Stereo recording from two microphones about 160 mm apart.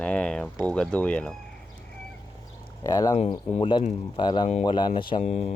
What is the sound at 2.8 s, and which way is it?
Speech, 25° left (ahead or behind).